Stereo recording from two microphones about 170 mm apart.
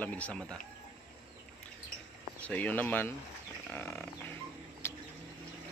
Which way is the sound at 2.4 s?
10° left (ahead or behind).